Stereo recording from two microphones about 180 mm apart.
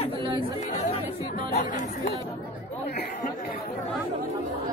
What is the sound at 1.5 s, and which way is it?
Speech, 45° left (ahead or behind).